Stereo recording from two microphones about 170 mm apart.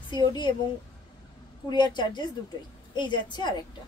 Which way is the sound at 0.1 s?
25° left (ahead or behind).